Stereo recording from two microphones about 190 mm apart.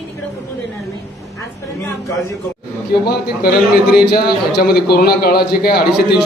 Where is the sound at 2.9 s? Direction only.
55° left (ahead or behind).